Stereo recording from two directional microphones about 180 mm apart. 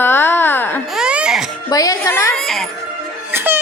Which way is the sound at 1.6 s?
20° left (ahead or behind).